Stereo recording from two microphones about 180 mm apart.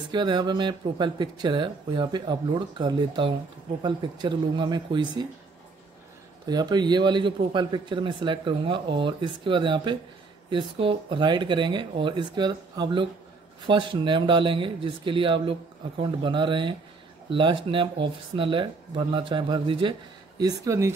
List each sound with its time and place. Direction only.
0.1 s speech: 25° right (ahead or behind)
6.4 s speech: 20° right (ahead or behind)